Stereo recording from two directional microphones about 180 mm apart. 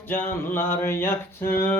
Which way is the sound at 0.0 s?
10° left (ahead or behind).